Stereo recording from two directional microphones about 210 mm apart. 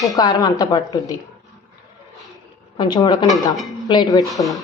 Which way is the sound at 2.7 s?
20° left (ahead or behind).